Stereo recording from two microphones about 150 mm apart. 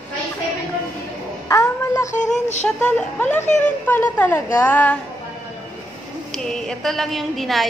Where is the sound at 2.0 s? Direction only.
55° left (ahead or behind).